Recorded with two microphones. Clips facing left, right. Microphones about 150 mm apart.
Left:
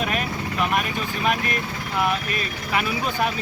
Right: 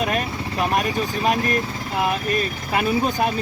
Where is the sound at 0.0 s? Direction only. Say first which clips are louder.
Right 2 dB; 35° right (ahead or behind).